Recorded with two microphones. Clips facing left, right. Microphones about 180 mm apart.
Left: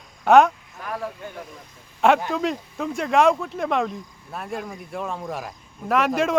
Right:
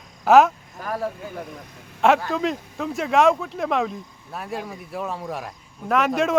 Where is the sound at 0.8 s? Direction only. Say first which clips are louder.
Right 3 dB; 40° right (ahead or behind).